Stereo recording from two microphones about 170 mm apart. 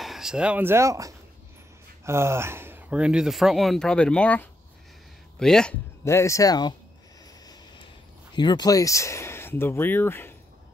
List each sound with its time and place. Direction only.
0.0 s speech: centre (ahead or behind)
6.0 s speech: 15° left (ahead or behind)
8.4 s speech: 25° left (ahead or behind)